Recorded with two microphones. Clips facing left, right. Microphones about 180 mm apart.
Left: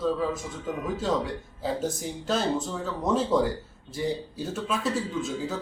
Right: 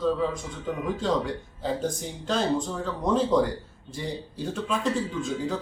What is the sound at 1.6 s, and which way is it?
Speech, 5° left (ahead or behind).